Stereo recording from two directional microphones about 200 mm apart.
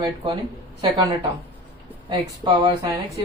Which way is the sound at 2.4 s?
25° right (ahead or behind).